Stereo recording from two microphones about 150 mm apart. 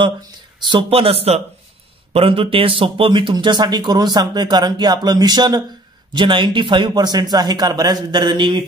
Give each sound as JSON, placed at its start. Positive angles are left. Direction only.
{"t": 0.6, "sound": "speech", "side_deg": -30}